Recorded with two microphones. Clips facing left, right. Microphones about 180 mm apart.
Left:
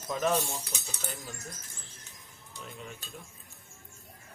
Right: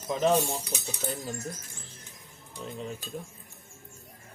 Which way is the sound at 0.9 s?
35° right (ahead or behind).